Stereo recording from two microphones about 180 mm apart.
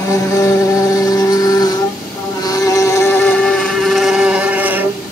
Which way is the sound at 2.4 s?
20° left (ahead or behind).